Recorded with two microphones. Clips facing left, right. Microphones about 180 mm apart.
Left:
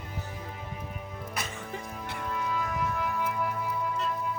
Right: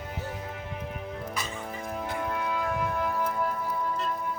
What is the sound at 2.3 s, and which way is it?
Music, 60° right (ahead or behind).